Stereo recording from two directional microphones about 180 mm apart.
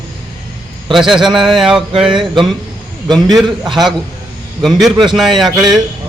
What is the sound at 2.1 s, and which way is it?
A man's voice, 25° right (ahead or behind).